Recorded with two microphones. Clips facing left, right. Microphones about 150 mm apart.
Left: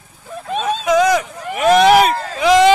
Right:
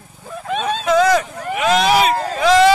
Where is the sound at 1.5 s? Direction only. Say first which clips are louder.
Left 5 dB; 50° left (ahead or behind).